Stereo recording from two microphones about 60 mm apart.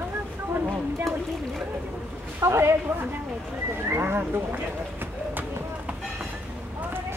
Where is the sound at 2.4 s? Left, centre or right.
Right.